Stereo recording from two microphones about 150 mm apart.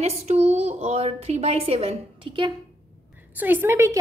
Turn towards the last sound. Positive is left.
turn(degrees=-20)  # may be behind; listen again after turning